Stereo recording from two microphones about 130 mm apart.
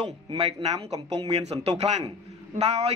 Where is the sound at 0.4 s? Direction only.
50° right (ahead or behind).